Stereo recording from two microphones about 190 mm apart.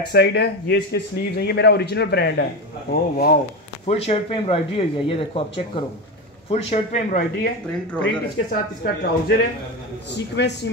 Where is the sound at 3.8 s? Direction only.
35° left (ahead or behind).